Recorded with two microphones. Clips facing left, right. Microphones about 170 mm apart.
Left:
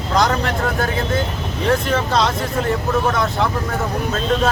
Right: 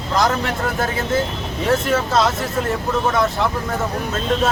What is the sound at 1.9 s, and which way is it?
Speech, centre (ahead or behind).